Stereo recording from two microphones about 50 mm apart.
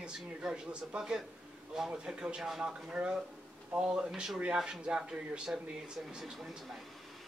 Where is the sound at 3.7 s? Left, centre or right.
Centre.